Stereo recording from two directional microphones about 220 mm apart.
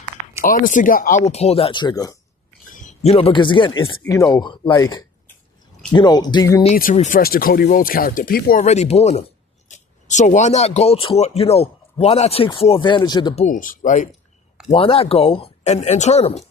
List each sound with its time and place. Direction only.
0.4 s speech: 35° left (ahead or behind); by 2.1 s 15° left (ahead or behind)
2.7 s speech: 30° left (ahead or behind)
4.0 s speech: 10° left (ahead or behind)
6.9 s speech: 35° left (ahead or behind)
8.6 s speech: 30° left (ahead or behind)
13.4 s speech: 35° left (ahead or behind)